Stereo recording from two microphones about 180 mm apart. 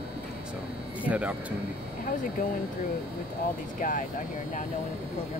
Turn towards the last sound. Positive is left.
turn(degrees=45)  # may be behind; listen again after turning